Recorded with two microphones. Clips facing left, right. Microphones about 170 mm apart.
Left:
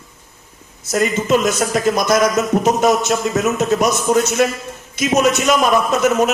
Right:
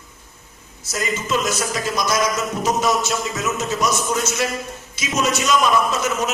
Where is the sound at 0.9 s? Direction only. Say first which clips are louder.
Left 8 dB; 55° left (ahead or behind).